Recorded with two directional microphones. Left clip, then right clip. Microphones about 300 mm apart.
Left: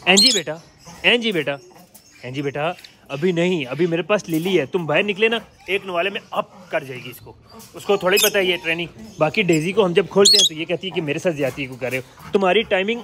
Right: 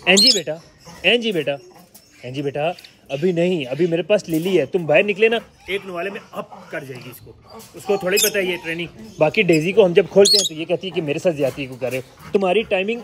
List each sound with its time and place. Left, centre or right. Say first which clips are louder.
0.0 s a man's voice: right 1 dB; centre